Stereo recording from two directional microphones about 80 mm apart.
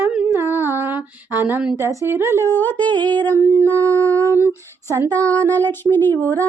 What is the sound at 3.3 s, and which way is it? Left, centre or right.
Humming, right.